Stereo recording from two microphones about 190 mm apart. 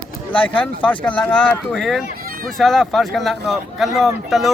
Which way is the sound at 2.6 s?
Centre (ahead or behind).